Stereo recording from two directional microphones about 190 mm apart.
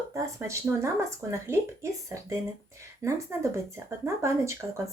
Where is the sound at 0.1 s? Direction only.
15° right (ahead or behind).